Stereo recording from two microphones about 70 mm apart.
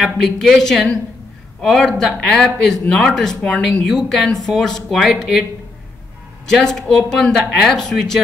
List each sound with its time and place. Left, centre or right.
0.0 s speech: centre
6.4 s speech: centre